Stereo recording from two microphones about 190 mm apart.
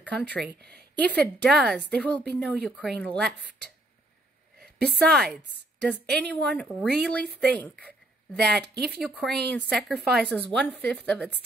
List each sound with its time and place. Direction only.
0.0 s speech: 5° left (ahead or behind)
0.6 s speech: 60° right (ahead or behind)
0.9 s speech: 5° left (ahead or behind)
4.8 s speech: 5° left (ahead or behind)